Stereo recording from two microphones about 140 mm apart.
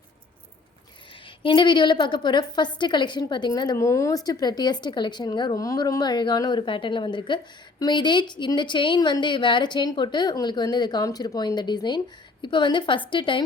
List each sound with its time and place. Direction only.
1.4 s a woman's voice: 35° left (ahead or behind)